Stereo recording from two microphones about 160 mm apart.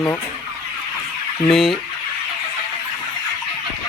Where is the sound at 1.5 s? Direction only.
Centre (ahead or behind).